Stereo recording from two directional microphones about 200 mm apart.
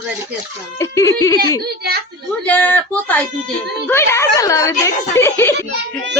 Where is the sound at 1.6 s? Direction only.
50° right (ahead or behind).